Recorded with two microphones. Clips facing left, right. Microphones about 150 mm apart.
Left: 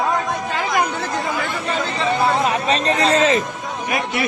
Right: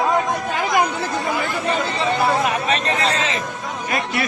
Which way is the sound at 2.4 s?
30° left (ahead or behind).